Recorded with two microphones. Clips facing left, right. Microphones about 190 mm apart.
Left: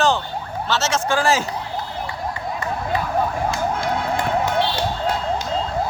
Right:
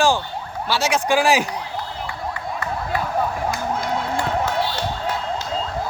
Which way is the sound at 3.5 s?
25° left (ahead or behind).